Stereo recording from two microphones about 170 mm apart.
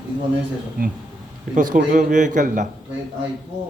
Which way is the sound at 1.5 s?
50° right (ahead or behind).